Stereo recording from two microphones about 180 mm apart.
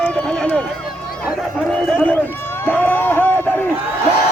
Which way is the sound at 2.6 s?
10° left (ahead or behind).